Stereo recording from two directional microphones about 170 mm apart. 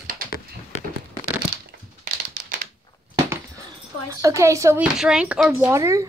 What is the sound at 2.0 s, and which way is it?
Crumpling, 55° right (ahead or behind).